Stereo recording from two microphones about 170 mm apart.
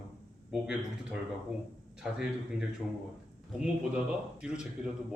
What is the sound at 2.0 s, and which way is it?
Speech, 5° right (ahead or behind).